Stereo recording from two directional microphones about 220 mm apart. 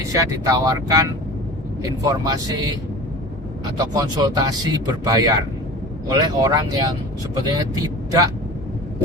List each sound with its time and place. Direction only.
0.0 s speech: 15° right (ahead or behind)
3.8 s speech: 20° right (ahead or behind)